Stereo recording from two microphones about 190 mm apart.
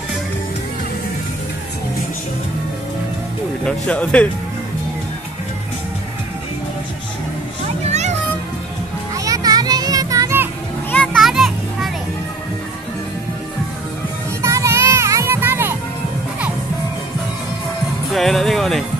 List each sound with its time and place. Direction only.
3.6 s speech: 5° left (ahead or behind)
7.9 s music: 35° right (ahead or behind)
9.1 s children playing: 20° right (ahead or behind)
10.9 s children playing: 5° left (ahead or behind)
14.4 s music: 15° right (ahead or behind)
18.1 s music: centre (ahead or behind)